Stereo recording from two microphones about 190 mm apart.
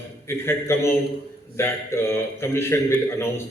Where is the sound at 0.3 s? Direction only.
15° left (ahead or behind).